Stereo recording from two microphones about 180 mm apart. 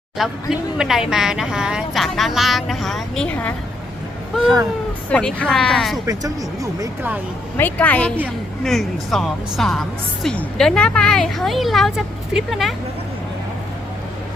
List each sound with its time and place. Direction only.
0.2 s speech: centre (ahead or behind)
5.0 s speech: 5° left (ahead or behind)
6.1 s speech: 20° right (ahead or behind)
7.5 s a woman's voice: 10° left (ahead or behind)